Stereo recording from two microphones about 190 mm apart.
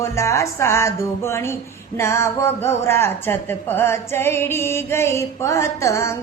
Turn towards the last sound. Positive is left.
turn(degrees=15)  # may be behind; listen again after turning